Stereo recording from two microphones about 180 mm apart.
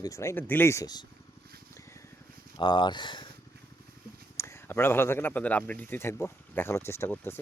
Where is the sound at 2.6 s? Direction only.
25° left (ahead or behind).